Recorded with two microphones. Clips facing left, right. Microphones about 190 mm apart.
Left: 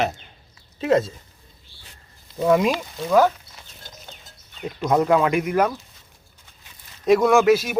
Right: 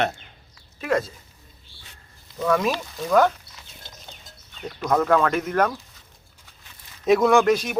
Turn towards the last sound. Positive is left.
turn(degrees=5)  # may be behind; listen again after turning